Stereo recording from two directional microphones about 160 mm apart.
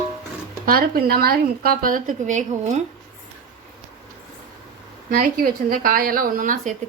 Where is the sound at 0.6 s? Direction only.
65° right (ahead or behind); by 2.8 s 50° right (ahead or behind).